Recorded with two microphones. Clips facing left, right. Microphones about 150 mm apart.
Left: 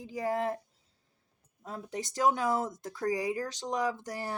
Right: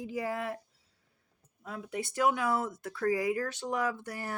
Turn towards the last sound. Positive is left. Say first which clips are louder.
# left 1 dB
turn(degrees=30)  # may be behind; listen again after turning